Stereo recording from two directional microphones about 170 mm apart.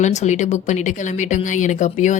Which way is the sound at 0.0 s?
45° left (ahead or behind).